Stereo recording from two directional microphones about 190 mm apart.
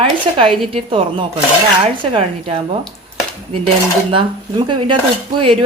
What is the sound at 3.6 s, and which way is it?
A woman's voice, 30° right (ahead or behind).